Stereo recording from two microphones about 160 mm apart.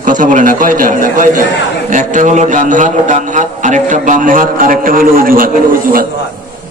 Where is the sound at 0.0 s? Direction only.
55° right (ahead or behind).